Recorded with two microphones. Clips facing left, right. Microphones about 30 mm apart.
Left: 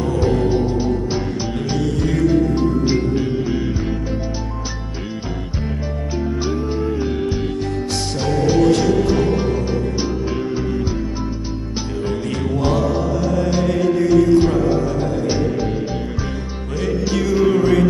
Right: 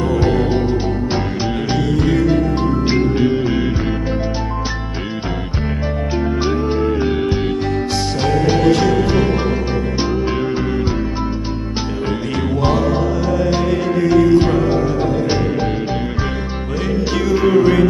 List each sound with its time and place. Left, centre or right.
1.7 s music: right
2.9 s music: right
6.1 s music: right
13.4 s music: centre
17.1 s music: centre